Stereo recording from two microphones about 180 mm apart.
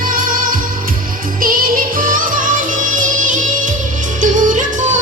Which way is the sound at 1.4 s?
50° right (ahead or behind).